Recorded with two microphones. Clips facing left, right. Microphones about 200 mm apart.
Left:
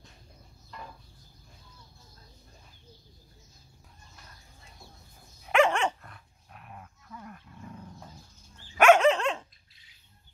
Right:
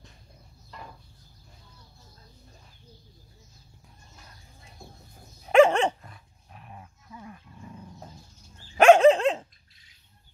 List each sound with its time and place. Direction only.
5.4 s dog: 35° right (ahead or behind)
6.8 s dog: 10° right (ahead or behind)
8.7 s dog: 30° right (ahead or behind)